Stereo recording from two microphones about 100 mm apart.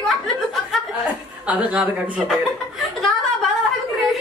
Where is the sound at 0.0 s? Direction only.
Centre (ahead or behind).